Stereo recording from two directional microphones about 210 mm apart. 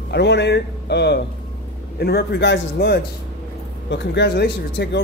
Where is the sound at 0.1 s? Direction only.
55° left (ahead or behind).